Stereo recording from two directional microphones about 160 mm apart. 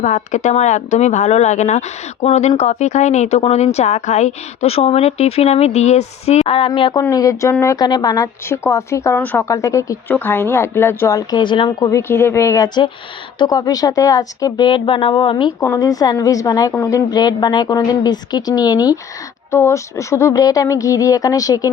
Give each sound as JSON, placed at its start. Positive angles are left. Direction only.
{"t": 0.0, "sound": "a woman's voice", "side_deg": 50}
{"t": 11.9, "sound": "a woman's voice", "side_deg": 15}
{"t": 15.6, "sound": "a woman's voice", "side_deg": 20}